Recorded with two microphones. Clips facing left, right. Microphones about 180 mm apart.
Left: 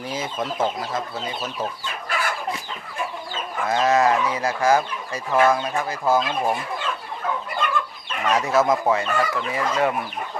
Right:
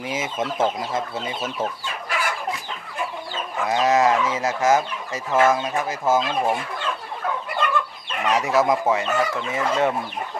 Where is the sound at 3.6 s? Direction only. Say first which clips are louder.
Even; 20° right (ahead or behind).